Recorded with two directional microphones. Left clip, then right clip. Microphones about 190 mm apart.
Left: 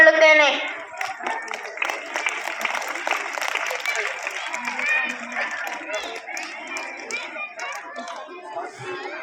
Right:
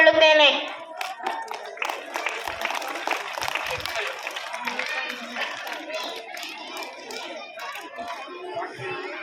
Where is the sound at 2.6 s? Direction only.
60° left (ahead or behind).